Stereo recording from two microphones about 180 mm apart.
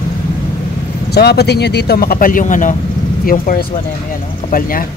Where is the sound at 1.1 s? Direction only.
65° left (ahead or behind).